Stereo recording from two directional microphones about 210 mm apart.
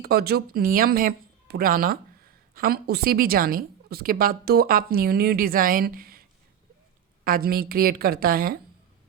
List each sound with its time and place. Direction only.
0.0 s a woman's voice: 50° right (ahead or behind)
7.3 s a woman's voice: 45° right (ahead or behind)